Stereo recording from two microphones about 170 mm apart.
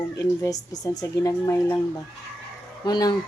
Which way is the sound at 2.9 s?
25° left (ahead or behind).